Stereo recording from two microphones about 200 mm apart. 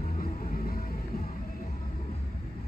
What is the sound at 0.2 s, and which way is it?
Music, 45° left (ahead or behind).